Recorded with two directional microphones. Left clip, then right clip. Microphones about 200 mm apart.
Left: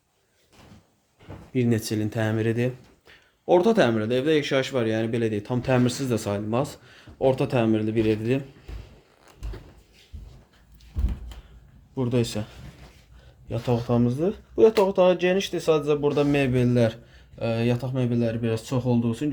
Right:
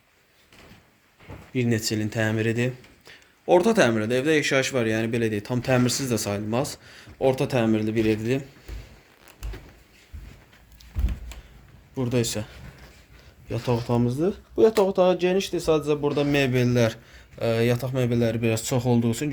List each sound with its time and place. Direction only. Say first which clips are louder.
1.5 s speech: even; 10° left (ahead or behind)
11.9 s speech: even; centre (ahead or behind)
13.8 s speech: even; 5° right (ahead or behind); by 19.3 s 25° right (ahead or behind)